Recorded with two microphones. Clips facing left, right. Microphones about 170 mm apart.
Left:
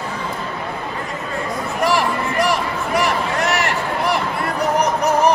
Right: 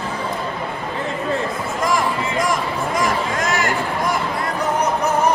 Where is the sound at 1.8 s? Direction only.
70° left (ahead or behind).